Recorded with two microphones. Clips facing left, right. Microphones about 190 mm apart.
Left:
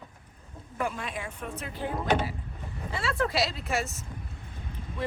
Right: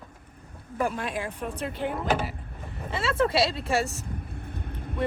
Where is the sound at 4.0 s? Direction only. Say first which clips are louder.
Right 5 dB; 55° right (ahead or behind).